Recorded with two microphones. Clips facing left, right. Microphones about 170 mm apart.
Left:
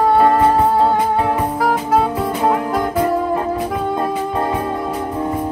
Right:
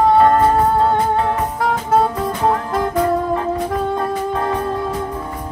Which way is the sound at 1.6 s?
5° left (ahead or behind).